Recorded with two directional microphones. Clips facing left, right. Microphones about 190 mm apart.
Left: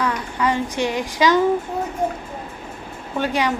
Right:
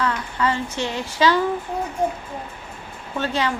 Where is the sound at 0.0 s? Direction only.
15° left (ahead or behind).